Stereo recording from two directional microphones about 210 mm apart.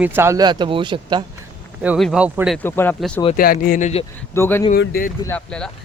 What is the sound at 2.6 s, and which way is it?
Speech, 10° left (ahead or behind).